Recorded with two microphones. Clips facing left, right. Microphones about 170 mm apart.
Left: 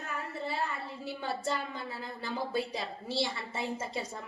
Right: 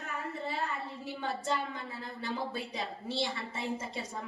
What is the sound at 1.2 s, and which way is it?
Speech, 35° left (ahead or behind).